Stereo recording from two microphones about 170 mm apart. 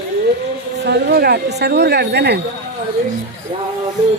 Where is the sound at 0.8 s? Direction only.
75° right (ahead or behind).